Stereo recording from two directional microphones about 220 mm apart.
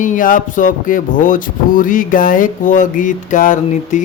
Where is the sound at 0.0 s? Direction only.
35° left (ahead or behind).